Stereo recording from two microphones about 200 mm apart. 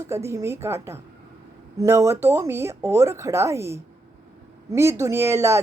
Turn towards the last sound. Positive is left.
turn(degrees=-15)  # may be behind; listen again after turning